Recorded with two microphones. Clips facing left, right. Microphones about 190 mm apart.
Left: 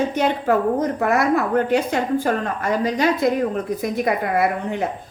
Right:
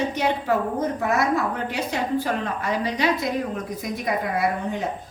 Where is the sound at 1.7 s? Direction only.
50° left (ahead or behind).